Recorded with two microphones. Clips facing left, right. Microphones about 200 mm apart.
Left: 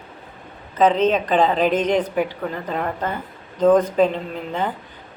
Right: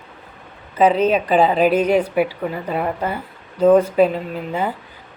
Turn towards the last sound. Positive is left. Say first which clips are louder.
# right 2 dB
turn(degrees=-10)  # may be behind; listen again after turning